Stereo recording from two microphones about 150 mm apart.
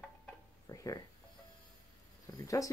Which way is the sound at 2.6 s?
25° left (ahead or behind).